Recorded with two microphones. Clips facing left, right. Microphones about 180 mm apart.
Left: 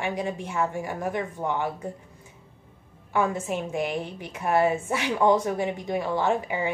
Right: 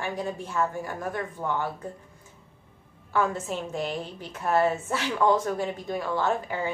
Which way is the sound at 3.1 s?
15° left (ahead or behind).